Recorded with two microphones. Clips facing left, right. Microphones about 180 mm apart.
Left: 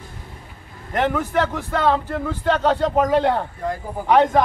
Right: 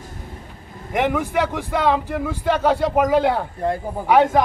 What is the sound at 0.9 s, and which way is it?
A man's voice, 10° right (ahead or behind).